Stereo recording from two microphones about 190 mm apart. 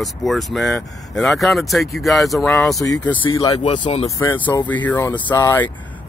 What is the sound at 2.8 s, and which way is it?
Speech, 15° left (ahead or behind).